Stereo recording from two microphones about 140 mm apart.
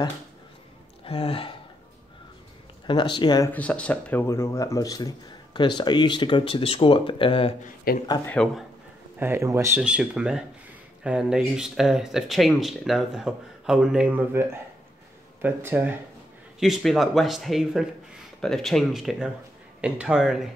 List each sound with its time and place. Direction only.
1.0 s speech: 45° left (ahead or behind)
2.9 s speech: 35° left (ahead or behind)
3.5 s speech: 10° left (ahead or behind); by 7.5 s 40° left (ahead or behind)
7.6 s speech: 90° left
8.4 s a man's voice: 5° left (ahead or behind)
9.2 s speech: 20° right (ahead or behind)
9.8 s speech: 5° right (ahead or behind)
16.5 s speech: centre (ahead or behind)